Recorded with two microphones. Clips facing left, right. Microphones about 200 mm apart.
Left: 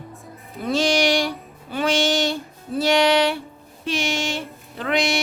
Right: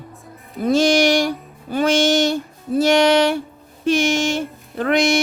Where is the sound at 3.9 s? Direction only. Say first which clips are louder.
Right 7 dB; 45° right (ahead or behind).